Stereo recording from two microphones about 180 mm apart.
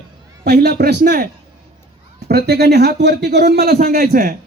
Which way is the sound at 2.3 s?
60° right (ahead or behind).